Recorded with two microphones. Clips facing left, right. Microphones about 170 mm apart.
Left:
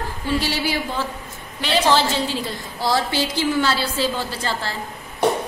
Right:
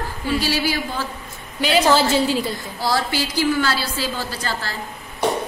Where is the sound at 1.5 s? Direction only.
5° right (ahead or behind).